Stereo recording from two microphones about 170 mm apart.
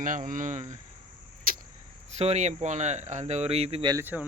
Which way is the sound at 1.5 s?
55° right (ahead or behind).